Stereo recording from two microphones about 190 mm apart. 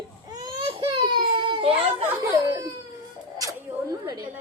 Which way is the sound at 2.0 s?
15° right (ahead or behind).